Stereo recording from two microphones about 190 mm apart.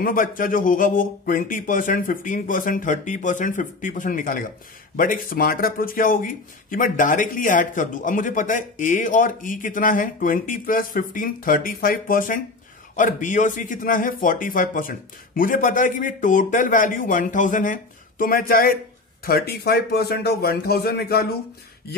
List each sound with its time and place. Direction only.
0.0 s a man's voice: 45° left (ahead or behind)